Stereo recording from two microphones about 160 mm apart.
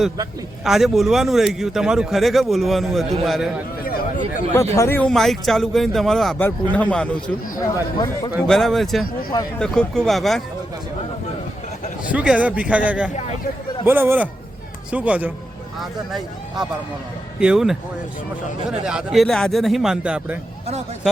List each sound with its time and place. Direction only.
0.6 s a man's voice: centre (ahead or behind)
3.8 s a sound: 65° left (ahead or behind)
4.5 s a man's voice: 20° left (ahead or behind)
7.6 s speech: 25° left (ahead or behind)
8.4 s a man's voice: centre (ahead or behind)
12.1 s a man's voice: 5° right (ahead or behind)